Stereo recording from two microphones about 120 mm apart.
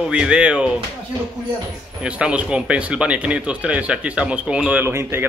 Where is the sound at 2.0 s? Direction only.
10° right (ahead or behind).